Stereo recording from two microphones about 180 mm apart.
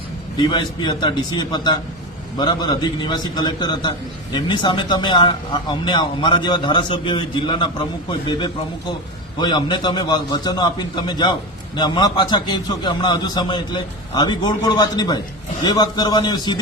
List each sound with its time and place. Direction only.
0.3 s speech: 25° left (ahead or behind)
9.4 s speech: 25° left (ahead or behind)